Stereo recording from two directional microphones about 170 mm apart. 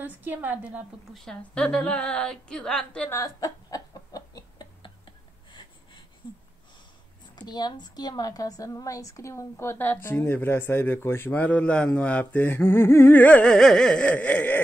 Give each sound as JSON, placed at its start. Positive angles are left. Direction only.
{"t": 0.0, "sound": "a woman's voice", "side_deg": -10}
{"t": 1.2, "sound": "speech", "side_deg": 5}
{"t": 3.2, "sound": "a sound", "side_deg": 20}
{"t": 7.3, "sound": "a woman's voice", "side_deg": 25}